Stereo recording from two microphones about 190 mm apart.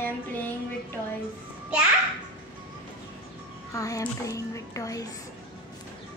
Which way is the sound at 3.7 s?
15° left (ahead or behind).